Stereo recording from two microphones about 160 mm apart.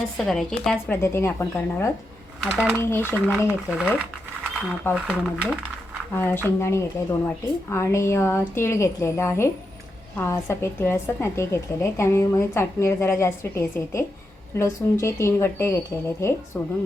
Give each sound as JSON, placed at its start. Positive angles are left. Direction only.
{"t": 0.2, "sound": "a woman's voice", "side_deg": 5}
{"t": 2.4, "sound": "speech", "side_deg": 0}
{"t": 2.7, "sound": "a woman's voice", "side_deg": 15}
{"t": 3.7, "sound": "speech", "side_deg": -5}
{"t": 5.0, "sound": "speech", "side_deg": -10}
{"t": 6.1, "sound": "a woman's voice", "side_deg": 15}